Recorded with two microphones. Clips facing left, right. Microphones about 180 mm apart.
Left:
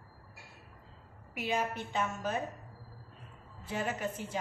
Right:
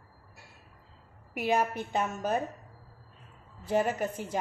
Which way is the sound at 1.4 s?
50° right (ahead or behind).